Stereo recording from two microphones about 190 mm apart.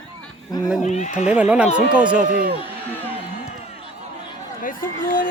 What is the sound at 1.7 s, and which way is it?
Speech, 5° right (ahead or behind).